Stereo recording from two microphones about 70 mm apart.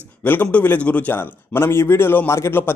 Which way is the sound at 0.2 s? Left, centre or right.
Left.